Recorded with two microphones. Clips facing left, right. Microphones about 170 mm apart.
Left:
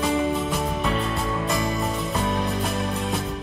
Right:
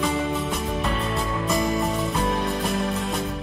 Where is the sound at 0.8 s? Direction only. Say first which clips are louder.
Left 1 dB; centre (ahead or behind).